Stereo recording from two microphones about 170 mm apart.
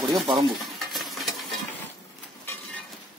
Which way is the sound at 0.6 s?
Centre (ahead or behind).